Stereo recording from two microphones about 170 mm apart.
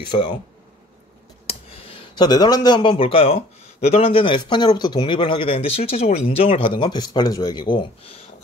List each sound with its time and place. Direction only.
0.1 s speech: 30° left (ahead or behind)
1.5 s speech: 35° left (ahead or behind)